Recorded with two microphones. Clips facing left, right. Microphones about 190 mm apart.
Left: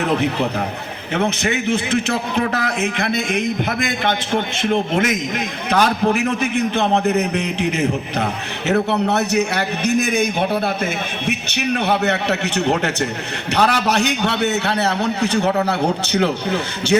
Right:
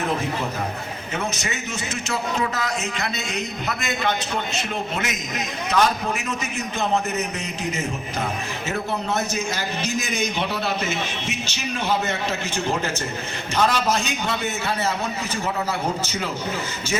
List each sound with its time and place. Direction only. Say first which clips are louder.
0.0 s a man's voice: left 6 dB; 70° left (ahead or behind)
4.7 s a man's voice: left 12 dB; 50° left (ahead or behind)
5.7 s a man's voice: left 5 dB; 70° left (ahead or behind)